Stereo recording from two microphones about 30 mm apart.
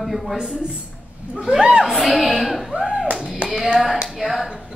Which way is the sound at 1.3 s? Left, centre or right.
Right.